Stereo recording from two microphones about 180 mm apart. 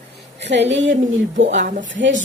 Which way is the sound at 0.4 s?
75° right (ahead or behind).